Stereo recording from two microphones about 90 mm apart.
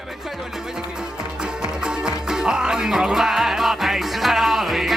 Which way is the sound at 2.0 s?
5° right (ahead or behind).